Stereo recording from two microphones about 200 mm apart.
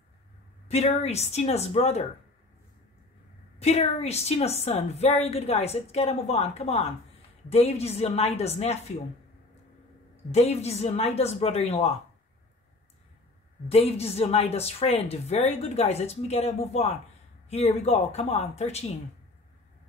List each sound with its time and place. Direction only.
0.7 s a woman's voice: 30° left (ahead or behind)
3.5 s a woman's voice: 30° left (ahead or behind)
10.3 s a woman's voice: 30° left (ahead or behind)
13.7 s a woman's voice: 30° left (ahead or behind)